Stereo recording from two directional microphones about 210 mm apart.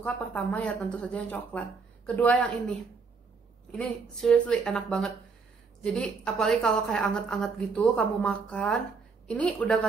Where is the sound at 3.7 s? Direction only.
Centre (ahead or behind).